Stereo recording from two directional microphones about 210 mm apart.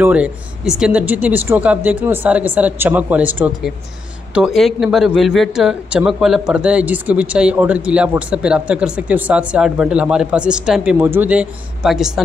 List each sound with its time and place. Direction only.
0.0 s speech: 5° right (ahead or behind)